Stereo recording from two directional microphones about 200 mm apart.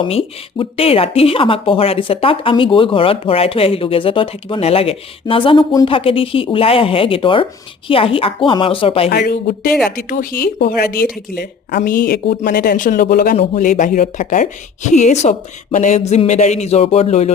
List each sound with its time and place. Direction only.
0.0 s speech: 25° left (ahead or behind)
9.0 s speech: 50° left (ahead or behind)
13.3 s a woman's voice: 30° left (ahead or behind)